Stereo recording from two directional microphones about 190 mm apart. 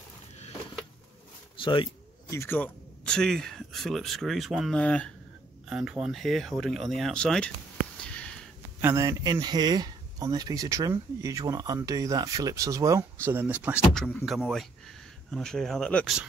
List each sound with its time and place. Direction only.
1.6 s speech: 25° left (ahead or behind); by 7.5 s 5° left (ahead or behind)
8.0 s sniff: 5° left (ahead or behind)
8.8 s speech: 15° right (ahead or behind); by 16.2 s 5° left (ahead or behind)